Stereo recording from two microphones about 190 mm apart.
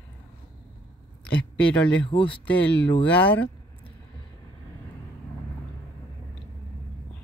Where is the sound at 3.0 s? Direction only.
10° left (ahead or behind).